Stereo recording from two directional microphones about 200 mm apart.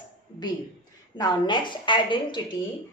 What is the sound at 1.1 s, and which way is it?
Speech, 20° left (ahead or behind).